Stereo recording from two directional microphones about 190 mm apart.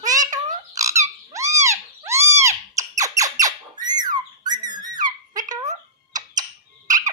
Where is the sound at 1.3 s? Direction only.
15° right (ahead or behind).